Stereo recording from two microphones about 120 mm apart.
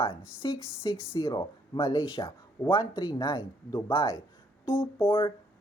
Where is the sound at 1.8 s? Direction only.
45° left (ahead or behind).